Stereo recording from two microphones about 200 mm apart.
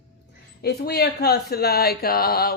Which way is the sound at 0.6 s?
55° left (ahead or behind).